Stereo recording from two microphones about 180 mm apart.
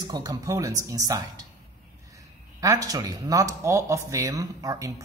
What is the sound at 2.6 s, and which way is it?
Speech, 20° right (ahead or behind).